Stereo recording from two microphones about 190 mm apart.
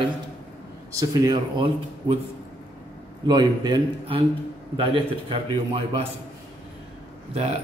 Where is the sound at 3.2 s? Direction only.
20° right (ahead or behind).